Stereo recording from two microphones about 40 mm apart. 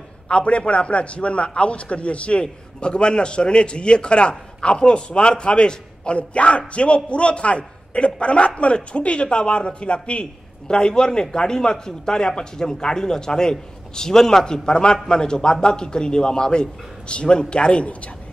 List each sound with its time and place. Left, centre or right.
0.3 s a man's voice: left